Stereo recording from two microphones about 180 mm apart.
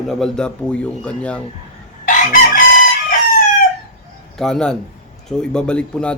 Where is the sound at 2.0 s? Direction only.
50° left (ahead or behind).